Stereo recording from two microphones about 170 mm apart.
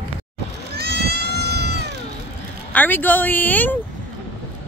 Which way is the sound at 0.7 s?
75° right (ahead or behind).